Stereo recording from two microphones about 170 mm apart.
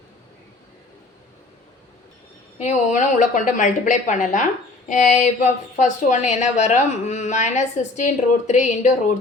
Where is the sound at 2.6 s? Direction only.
45° left (ahead or behind).